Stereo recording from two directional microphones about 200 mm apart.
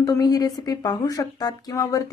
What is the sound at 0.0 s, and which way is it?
Speech, 15° left (ahead or behind).